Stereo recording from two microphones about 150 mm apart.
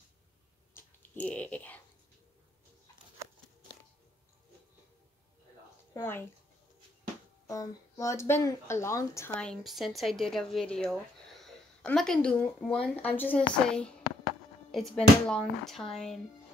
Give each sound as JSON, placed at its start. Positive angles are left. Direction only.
{"t": 0.7, "sound": "a sound", "side_deg": 10}
{"t": 7.4, "sound": "speech", "side_deg": 20}
{"t": 9.4, "sound": "speech", "side_deg": 0}